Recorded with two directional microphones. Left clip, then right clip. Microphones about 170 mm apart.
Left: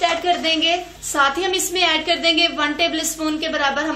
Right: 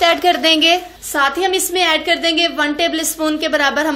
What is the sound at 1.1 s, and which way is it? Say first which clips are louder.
A woman's voice: right 3 dB; 30° right (ahead or behind).